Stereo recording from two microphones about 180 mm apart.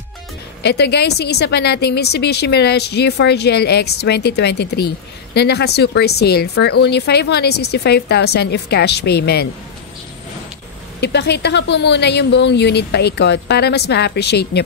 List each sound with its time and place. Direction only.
0.6 s a woman's voice: 70° left (ahead or behind)
11.0 s speech: 70° left (ahead or behind)